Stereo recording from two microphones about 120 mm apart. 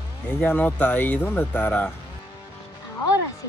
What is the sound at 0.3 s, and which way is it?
Speech, 15° left (ahead or behind).